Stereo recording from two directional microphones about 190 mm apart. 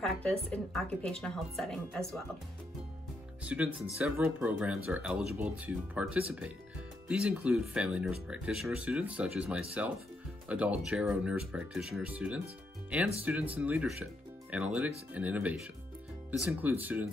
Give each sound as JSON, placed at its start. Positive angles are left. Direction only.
{"t": 0.0, "sound": "speech", "side_deg": 5}
{"t": 3.4, "sound": "speech", "side_deg": -5}